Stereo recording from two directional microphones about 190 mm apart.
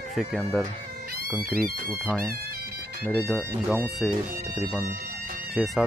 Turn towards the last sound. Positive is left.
turn(degrees=0)  # may be behind; listen again after turning